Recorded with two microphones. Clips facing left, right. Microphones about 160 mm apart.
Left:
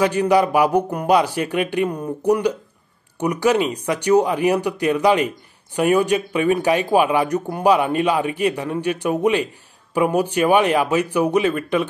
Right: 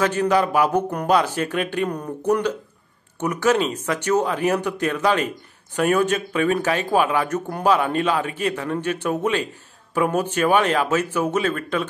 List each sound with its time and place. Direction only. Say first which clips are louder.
0.0 s speech: left 3 dB; 10° left (ahead or behind)